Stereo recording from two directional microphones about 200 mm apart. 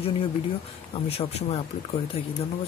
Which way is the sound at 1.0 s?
30° left (ahead or behind).